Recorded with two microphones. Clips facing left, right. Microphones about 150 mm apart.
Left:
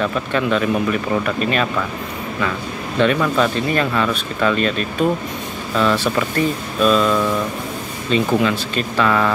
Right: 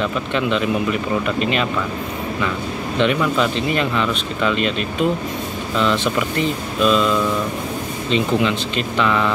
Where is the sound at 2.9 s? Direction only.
15° right (ahead or behind).